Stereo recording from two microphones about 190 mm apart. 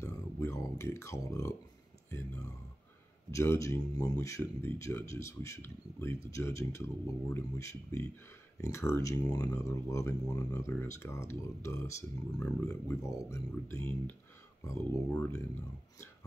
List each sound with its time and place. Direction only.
0.0 s speech: 15° left (ahead or behind)